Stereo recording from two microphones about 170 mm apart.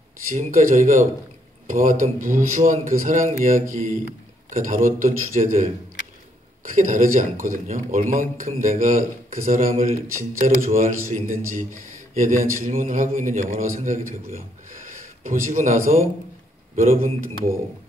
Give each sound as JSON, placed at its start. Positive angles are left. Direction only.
{"t": 0.3, "sound": "speech", "side_deg": -50}